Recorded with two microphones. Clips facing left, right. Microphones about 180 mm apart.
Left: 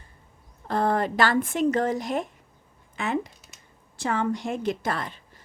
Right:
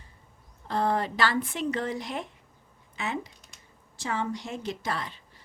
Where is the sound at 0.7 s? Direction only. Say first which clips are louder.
Left 3 dB; 50° left (ahead or behind).